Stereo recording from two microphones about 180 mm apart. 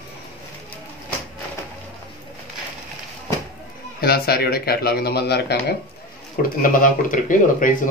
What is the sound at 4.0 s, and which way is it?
Speech, 60° left (ahead or behind).